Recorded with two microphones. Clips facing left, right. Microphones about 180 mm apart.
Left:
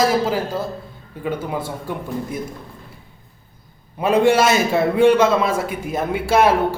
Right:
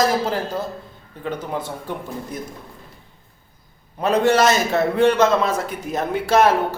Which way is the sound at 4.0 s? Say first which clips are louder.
Left 1 dB; 10° left (ahead or behind).